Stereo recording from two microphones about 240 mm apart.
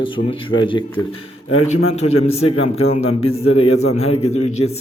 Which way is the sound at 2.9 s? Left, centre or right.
Left.